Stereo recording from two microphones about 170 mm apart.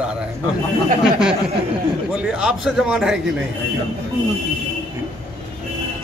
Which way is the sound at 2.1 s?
5° right (ahead or behind).